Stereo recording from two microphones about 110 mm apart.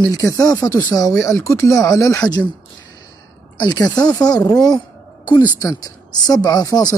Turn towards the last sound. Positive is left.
turn(degrees=35)  # may be behind; listen again after turning